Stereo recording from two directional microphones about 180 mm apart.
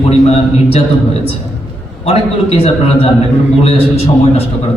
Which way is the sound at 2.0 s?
30° left (ahead or behind).